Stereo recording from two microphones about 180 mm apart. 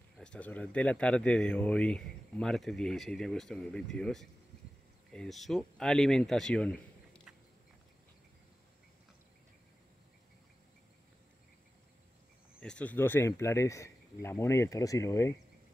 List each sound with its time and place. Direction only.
0.2 s speech: 5° left (ahead or behind)
12.5 s speech: 5° left (ahead or behind)